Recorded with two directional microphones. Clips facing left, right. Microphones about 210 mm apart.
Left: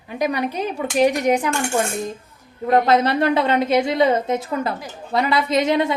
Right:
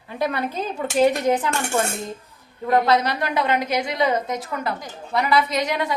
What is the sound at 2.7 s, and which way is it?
A woman's voice, 25° left (ahead or behind).